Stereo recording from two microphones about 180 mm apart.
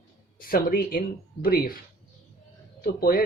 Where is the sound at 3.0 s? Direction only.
55° left (ahead or behind).